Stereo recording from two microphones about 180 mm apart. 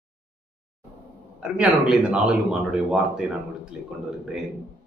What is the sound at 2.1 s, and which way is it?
Speech, 5° right (ahead or behind).